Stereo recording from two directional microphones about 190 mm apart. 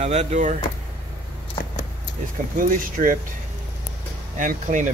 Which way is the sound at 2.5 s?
45° right (ahead or behind).